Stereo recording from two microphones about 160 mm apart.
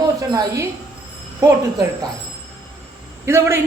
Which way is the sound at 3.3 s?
15° right (ahead or behind).